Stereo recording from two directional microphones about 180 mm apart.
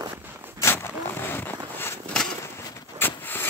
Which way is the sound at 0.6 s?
15° left (ahead or behind).